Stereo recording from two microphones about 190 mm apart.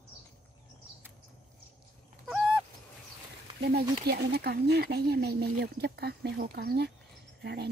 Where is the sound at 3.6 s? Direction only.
55° right (ahead or behind).